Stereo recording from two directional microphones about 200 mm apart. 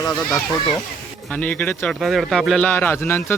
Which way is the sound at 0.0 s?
20° left (ahead or behind).